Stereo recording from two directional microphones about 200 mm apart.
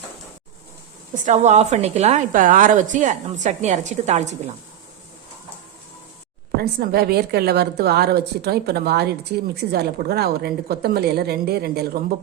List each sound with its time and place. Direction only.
1.2 s a woman's voice: 35° right (ahead or behind)
6.6 s a woman's voice: 50° right (ahead or behind)